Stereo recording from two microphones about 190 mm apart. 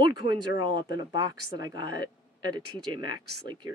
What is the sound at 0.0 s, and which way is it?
Speech, 25° right (ahead or behind).